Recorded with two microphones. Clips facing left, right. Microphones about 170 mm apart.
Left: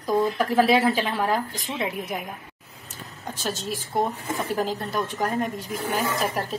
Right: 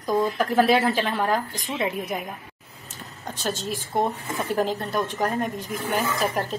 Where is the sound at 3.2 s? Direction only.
Centre (ahead or behind).